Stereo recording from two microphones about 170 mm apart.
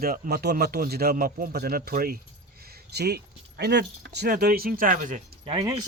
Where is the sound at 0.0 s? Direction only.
60° right (ahead or behind).